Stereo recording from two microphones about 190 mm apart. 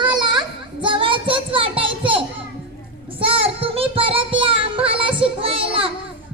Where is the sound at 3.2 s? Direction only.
30° right (ahead or behind).